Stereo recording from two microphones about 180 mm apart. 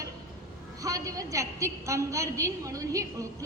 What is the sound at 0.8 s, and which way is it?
A woman's voice, 20° right (ahead or behind).